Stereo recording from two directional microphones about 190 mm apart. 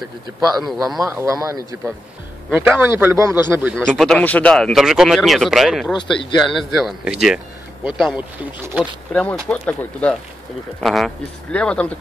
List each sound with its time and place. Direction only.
0.4 s speech: 20° right (ahead or behind)
0.7 s speech: centre (ahead or behind)
1.0 s a man's voice: 15° right (ahead or behind)
3.7 s speech: 5° left (ahead or behind)
5.9 s speech: 25° left (ahead or behind)
6.8 s speech: centre (ahead or behind)